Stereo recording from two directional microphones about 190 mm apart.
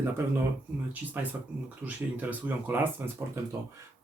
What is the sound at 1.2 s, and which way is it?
Speech, 10° right (ahead or behind).